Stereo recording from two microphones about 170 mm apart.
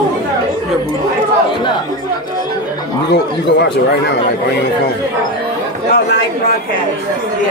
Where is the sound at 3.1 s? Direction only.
80° left.